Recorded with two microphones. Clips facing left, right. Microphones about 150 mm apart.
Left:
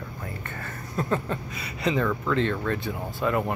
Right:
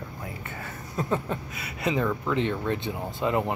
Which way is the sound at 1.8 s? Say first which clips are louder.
Left 1 dB; 10° right (ahead or behind).